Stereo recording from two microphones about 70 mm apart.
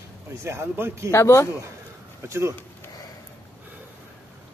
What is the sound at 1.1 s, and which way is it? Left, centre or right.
Speech, left.